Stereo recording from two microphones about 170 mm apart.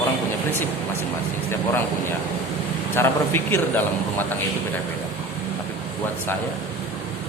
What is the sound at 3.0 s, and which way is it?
A man's voice, 15° left (ahead or behind).